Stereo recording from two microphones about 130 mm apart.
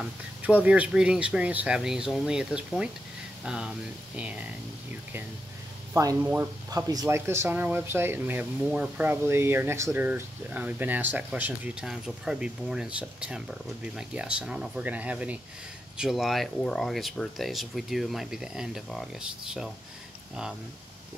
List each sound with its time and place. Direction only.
0.0 s speech: 10° right (ahead or behind)
6.2 s speech: 15° right (ahead or behind)
6.7 s speech: 30° right (ahead or behind); by 19.0 s 5° right (ahead or behind)